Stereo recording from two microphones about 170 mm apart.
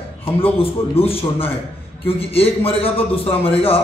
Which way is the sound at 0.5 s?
35° left (ahead or behind).